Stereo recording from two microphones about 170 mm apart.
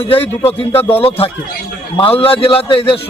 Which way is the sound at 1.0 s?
35° left (ahead or behind).